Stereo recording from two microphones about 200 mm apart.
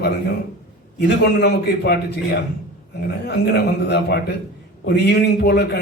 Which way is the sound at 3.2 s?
55° left (ahead or behind).